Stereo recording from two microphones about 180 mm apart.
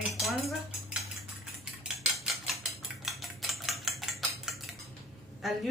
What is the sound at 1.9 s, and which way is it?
Cutlery, centre (ahead or behind).